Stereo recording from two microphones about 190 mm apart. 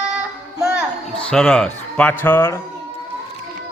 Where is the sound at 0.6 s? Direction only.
5° right (ahead or behind).